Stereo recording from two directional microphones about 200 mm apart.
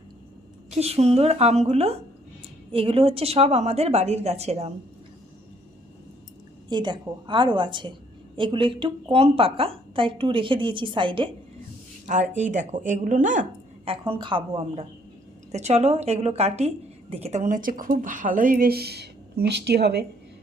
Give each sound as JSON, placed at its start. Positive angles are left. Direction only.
{"t": 0.7, "sound": "a woman's voice", "side_deg": -30}
{"t": 6.7, "sound": "a woman's voice", "side_deg": -20}
{"t": 12.0, "sound": "speech", "side_deg": -40}
{"t": 13.9, "sound": "a woman's voice", "side_deg": -25}